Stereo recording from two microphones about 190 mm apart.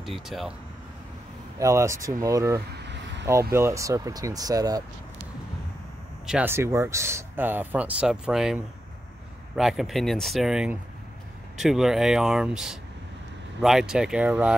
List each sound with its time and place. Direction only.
0.0 s speech: centre (ahead or behind)
1.6 s speech: 15° right (ahead or behind)
2.7 s a sound: 65° right (ahead or behind)
3.5 s speech: 15° right (ahead or behind)
6.2 s speech: 10° right (ahead or behind)